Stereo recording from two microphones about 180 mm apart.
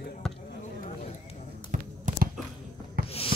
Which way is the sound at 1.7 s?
45° right (ahead or behind).